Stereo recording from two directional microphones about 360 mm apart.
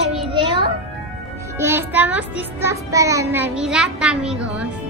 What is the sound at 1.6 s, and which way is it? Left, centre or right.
Music, centre.